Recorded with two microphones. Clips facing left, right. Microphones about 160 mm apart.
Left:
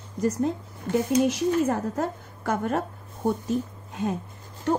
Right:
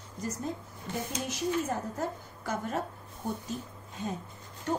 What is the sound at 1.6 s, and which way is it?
A woman's voice, 65° left (ahead or behind).